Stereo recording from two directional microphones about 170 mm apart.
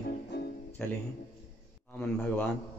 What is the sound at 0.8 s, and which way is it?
Speech, 5° left (ahead or behind).